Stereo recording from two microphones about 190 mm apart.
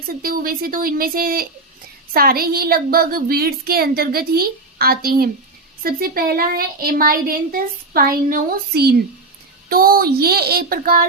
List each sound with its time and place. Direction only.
0.2 s a woman's voice: 50° right (ahead or behind)